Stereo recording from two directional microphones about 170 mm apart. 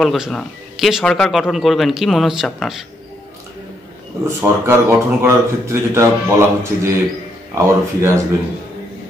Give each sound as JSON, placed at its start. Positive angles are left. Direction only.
{"t": 0.0, "sound": "a man's voice", "side_deg": 0}
{"t": 4.3, "sound": "speech", "side_deg": -15}